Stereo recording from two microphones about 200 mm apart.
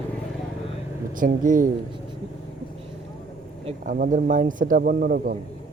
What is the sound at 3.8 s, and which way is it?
A man's voice, 45° right (ahead or behind).